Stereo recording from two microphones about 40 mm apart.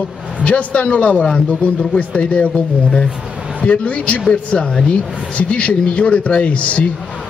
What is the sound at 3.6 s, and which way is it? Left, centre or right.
Speech, left.